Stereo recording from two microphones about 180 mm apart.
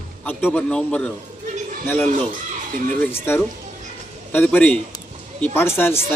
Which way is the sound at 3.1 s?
10° left (ahead or behind).